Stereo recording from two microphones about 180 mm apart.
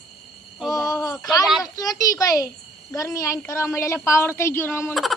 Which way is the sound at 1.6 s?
20° left (ahead or behind).